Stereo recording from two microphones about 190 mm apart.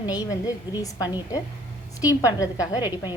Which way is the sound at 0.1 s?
20° left (ahead or behind).